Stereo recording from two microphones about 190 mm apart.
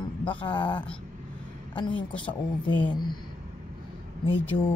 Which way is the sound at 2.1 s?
25° left (ahead or behind).